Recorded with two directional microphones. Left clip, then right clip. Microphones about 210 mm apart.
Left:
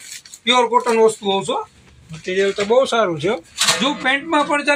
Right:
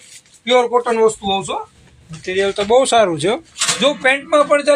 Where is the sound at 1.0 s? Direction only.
30° right (ahead or behind).